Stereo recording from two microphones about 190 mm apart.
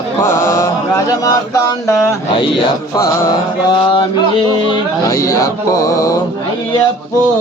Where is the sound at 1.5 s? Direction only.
15° left (ahead or behind).